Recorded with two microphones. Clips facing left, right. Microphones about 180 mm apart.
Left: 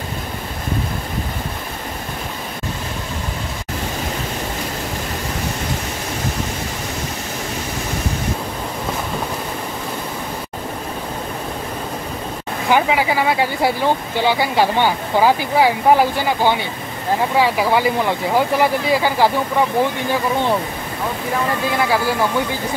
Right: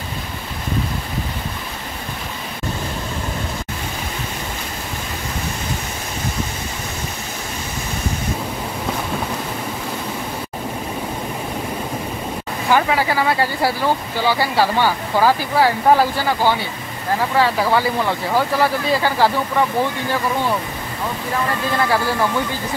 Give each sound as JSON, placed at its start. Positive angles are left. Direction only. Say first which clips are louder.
{"t": 12.6, "sound": "speech", "louder": "left 1 dB", "side_deg": 15}
{"t": 21.7, "sound": "speech", "louder": "even", "side_deg": 10}